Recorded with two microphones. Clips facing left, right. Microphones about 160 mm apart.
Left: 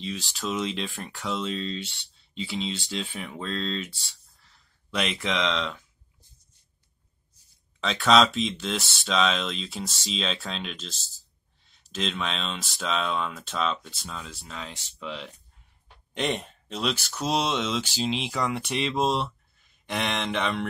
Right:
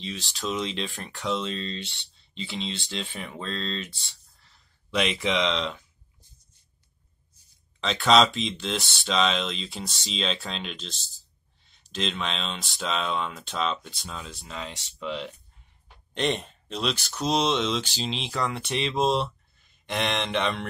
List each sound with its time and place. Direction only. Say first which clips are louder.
0.3 s speech: even; 5° left (ahead or behind)
4.9 s speech: right 3 dB; centre (ahead or behind)
7.8 s speech: even; centre (ahead or behind)